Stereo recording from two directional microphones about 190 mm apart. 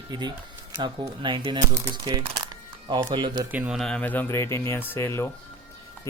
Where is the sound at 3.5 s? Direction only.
5° right (ahead or behind); by 5.2 s 15° left (ahead or behind).